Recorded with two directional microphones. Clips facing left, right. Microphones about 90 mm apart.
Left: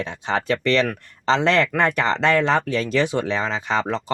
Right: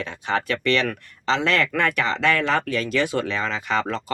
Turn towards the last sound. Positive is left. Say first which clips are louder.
# left 2 dB
turn(degrees=25)  # may be behind; listen again after turning